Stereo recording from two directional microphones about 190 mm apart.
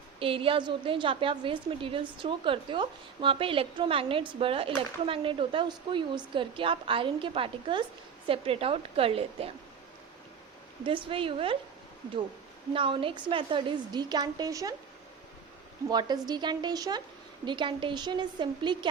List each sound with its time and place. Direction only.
0.2 s a woman's voice: 30° right (ahead or behind)
10.8 s a woman's voice: 25° right (ahead or behind)
12.7 s a woman's voice: 25° right (ahead or behind)
15.9 s a woman's voice: 20° right (ahead or behind)